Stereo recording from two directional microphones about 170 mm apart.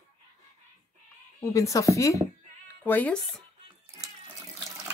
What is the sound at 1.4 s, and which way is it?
Speech, 20° left (ahead or behind).